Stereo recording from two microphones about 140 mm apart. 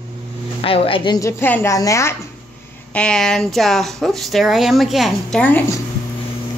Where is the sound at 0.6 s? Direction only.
40° left (ahead or behind).